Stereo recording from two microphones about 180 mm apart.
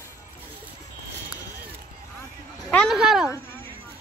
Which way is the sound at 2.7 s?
Centre (ahead or behind).